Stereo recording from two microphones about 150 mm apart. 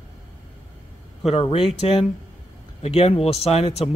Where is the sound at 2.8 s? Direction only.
40° left (ahead or behind).